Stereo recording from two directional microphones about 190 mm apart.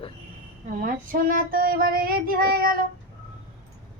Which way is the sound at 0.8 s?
45° right (ahead or behind).